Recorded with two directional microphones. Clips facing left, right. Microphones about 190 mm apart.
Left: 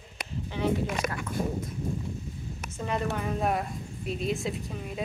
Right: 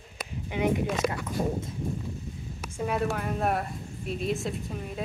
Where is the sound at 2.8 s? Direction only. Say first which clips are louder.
Right 2 dB; 5° right (ahead or behind).